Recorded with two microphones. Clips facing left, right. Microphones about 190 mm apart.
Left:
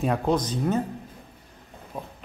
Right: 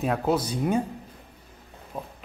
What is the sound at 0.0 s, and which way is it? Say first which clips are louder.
Speech: left 1 dB; 5° right (ahead or behind).